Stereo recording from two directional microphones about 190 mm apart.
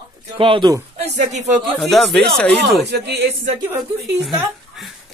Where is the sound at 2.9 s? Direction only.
60° right (ahead or behind).